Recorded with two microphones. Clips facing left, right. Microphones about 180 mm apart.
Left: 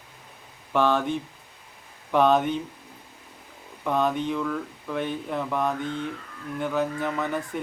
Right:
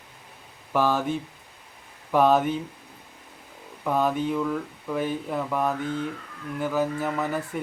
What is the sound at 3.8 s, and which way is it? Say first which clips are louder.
Speech: right 1 dB; 5° right (ahead or behind).